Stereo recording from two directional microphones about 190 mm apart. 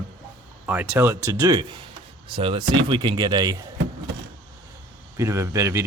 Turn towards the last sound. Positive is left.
turn(degrees=-15)  # may be behind; listen again after turning